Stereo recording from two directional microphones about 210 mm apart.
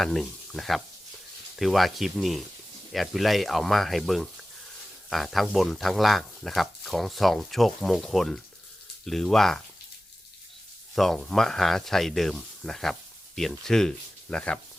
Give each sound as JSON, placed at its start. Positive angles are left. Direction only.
{"t": 0.0, "sound": "speech", "side_deg": 0}
{"t": 10.9, "sound": "speech", "side_deg": 0}